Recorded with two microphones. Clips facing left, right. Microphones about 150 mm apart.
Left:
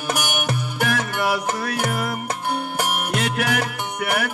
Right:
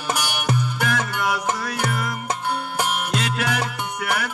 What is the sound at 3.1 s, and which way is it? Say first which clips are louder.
Music: left 2 dB; 60° left (ahead or behind).